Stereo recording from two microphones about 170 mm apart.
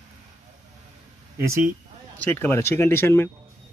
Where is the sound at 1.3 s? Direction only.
15° right (ahead or behind).